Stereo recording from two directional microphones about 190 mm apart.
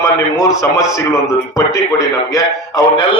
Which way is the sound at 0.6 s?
15° left (ahead or behind).